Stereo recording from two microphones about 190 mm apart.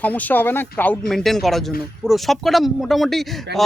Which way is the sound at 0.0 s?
10° left (ahead or behind).